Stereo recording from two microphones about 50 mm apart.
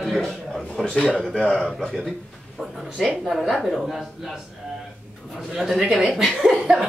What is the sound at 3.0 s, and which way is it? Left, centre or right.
Speech, centre.